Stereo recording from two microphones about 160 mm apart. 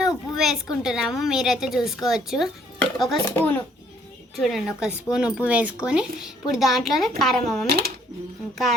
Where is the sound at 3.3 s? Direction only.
10° left (ahead or behind).